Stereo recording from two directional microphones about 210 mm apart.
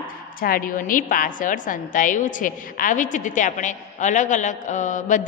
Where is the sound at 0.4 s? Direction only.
45° left (ahead or behind).